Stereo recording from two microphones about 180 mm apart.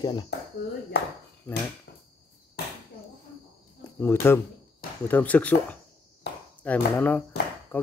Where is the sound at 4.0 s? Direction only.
15° left (ahead or behind).